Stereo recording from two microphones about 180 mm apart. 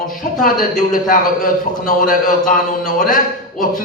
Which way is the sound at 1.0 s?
50° left (ahead or behind).